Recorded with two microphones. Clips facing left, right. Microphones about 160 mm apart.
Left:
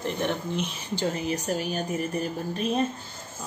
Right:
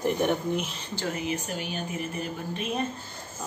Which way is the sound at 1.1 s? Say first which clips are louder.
Left 3 dB; 40° left (ahead or behind).